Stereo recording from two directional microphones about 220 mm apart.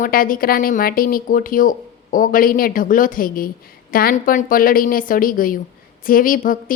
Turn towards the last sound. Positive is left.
turn(degrees=40)  # may be behind; listen again after turning